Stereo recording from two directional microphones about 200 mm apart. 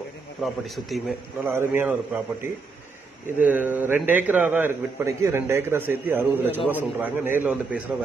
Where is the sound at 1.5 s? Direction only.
10° right (ahead or behind).